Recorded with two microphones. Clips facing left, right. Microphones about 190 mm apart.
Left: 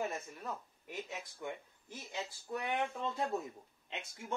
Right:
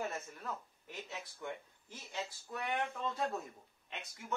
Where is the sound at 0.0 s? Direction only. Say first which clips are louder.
Left 2 dB; 10° left (ahead or behind).